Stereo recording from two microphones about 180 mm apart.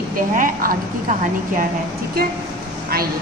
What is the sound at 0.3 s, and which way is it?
Speech, 50° right (ahead or behind).